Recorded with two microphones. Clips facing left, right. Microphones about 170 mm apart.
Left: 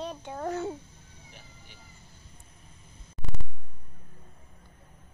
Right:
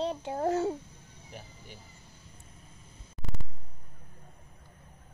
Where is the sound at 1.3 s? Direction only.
40° right (ahead or behind).